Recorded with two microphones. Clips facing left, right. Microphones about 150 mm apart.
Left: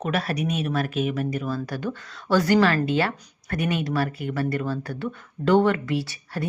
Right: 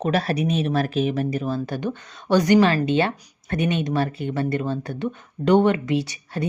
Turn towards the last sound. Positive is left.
turn(degrees=-20)  # may be behind; listen again after turning